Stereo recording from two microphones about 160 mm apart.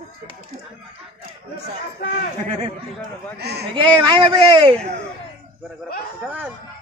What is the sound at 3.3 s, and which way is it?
Speech, 90° right.